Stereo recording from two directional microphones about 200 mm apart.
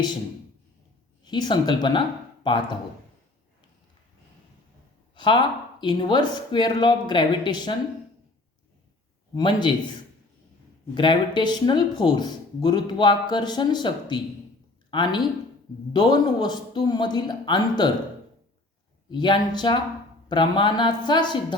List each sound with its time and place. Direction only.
1.2 s speech: 20° left (ahead or behind)
5.1 s speech: 25° left (ahead or behind)
9.3 s speech: 20° left (ahead or behind)
10.9 s speech: 25° left (ahead or behind)
19.1 s speech: 20° left (ahead or behind)